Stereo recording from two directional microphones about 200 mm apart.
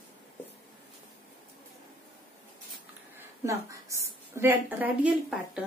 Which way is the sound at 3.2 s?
15° right (ahead or behind).